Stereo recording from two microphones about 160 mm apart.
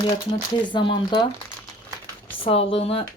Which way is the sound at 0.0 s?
30° left (ahead or behind).